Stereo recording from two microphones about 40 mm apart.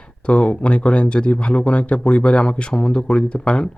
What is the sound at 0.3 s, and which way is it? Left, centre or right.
Speech, left.